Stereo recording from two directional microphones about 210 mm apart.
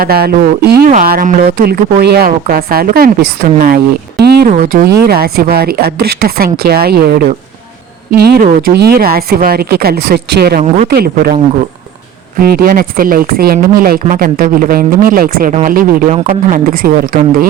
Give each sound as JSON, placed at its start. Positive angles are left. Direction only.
{"t": 0.0, "sound": "speech", "side_deg": -45}
{"t": 12.4, "sound": "speech", "side_deg": -45}